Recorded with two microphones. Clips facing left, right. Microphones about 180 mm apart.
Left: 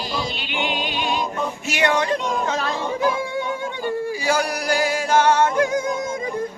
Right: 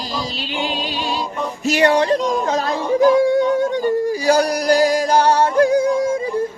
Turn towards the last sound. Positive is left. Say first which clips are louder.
# right 6 dB
turn(degrees=-30)  # may be behind; listen again after turning